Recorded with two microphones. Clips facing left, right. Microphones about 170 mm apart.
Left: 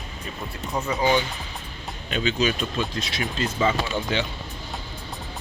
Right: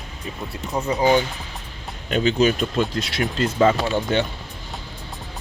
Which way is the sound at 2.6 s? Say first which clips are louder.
Right 5 dB; 60° right (ahead or behind).